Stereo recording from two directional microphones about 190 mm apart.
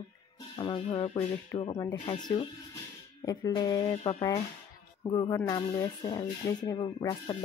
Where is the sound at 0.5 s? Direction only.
25° left (ahead or behind).